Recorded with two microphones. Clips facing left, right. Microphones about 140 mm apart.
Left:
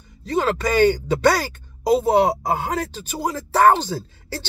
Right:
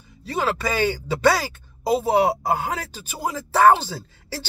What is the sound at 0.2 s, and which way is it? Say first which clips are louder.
Speech: left 3 dB; 5° right (ahead or behind).